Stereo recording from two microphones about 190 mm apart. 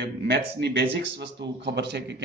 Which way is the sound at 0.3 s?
60° right (ahead or behind).